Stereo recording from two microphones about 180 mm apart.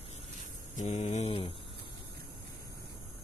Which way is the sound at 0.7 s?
40° left (ahead or behind).